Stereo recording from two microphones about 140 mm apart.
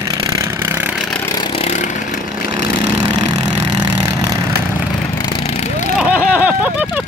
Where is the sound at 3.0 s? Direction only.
30° right (ahead or behind).